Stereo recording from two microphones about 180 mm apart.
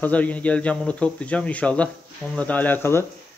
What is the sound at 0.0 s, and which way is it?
Speech, 10° left (ahead or behind).